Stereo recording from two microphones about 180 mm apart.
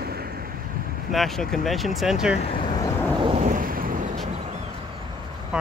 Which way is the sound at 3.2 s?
40° right (ahead or behind).